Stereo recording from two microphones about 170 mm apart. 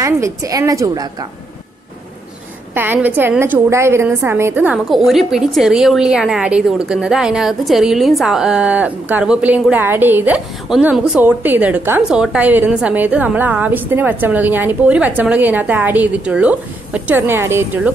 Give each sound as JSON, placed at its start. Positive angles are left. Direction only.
{"t": 0.0, "sound": "a woman's voice", "side_deg": -15}
{"t": 2.7, "sound": "a woman's voice", "side_deg": -10}
{"t": 4.8, "sound": "a woman's voice", "side_deg": 0}